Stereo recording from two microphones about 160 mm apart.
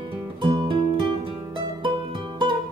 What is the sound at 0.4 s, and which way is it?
Music, 30° right (ahead or behind).